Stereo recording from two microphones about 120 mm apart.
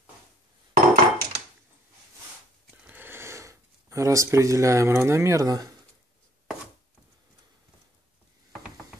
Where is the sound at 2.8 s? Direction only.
15° right (ahead or behind).